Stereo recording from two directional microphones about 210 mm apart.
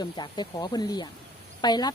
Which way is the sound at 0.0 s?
20° left (ahead or behind).